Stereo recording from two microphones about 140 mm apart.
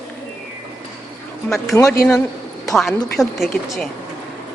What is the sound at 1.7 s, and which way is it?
Speech, 25° left (ahead or behind).